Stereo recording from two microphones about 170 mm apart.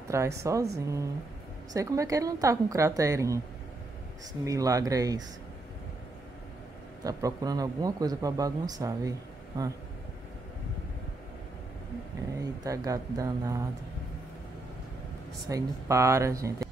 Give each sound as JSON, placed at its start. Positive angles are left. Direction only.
{"t": 0.1, "sound": "speech", "side_deg": -15}
{"t": 7.0, "sound": "speech", "side_deg": -20}
{"t": 12.4, "sound": "speech", "side_deg": -20}
{"t": 15.4, "sound": "speech", "side_deg": -20}